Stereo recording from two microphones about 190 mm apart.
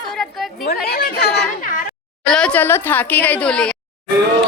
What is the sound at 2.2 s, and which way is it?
A woman's voice, 5° left (ahead or behind).